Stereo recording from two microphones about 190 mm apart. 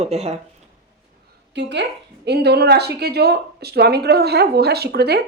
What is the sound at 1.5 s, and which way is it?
Speech, 65° right (ahead or behind).